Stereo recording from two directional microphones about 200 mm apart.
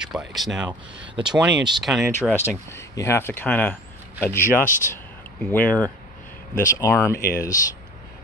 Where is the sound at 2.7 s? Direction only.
15° left (ahead or behind).